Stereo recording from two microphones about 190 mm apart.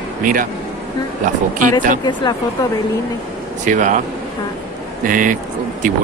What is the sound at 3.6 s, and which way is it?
Speech, 40° right (ahead or behind).